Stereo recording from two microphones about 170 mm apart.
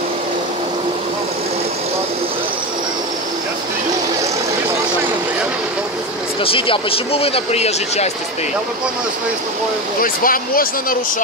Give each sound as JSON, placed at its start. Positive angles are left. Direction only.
{"t": 6.4, "sound": "speech", "side_deg": 30}
{"t": 10.0, "sound": "speech", "side_deg": 55}